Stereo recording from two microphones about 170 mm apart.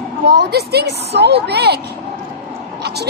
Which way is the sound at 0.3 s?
75° right (ahead or behind).